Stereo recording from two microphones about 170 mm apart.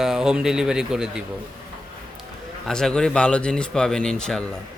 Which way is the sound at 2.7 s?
5° left (ahead or behind).